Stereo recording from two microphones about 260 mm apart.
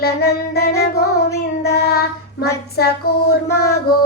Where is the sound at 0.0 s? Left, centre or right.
Left.